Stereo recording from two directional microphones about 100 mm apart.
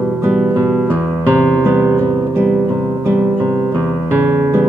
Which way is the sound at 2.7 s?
25° right (ahead or behind).